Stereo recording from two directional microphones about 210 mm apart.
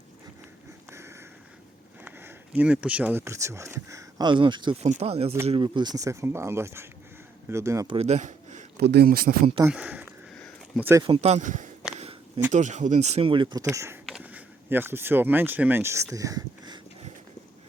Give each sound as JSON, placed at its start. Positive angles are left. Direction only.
{"t": 0.9, "sound": "a sound", "side_deg": -10}
{"t": 2.0, "sound": "speech", "side_deg": -10}
{"t": 7.9, "sound": "a sound", "side_deg": -30}
{"t": 8.8, "sound": "speech", "side_deg": -50}
{"t": 9.6, "sound": "speech", "side_deg": -5}
{"t": 11.0, "sound": "speech", "side_deg": -30}
{"t": 16.1, "sound": "whispering", "side_deg": -15}